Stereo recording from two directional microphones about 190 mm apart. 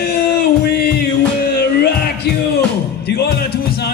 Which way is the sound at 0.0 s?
55° left (ahead or behind).